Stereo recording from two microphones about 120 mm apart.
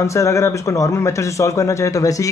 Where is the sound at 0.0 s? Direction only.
25° left (ahead or behind).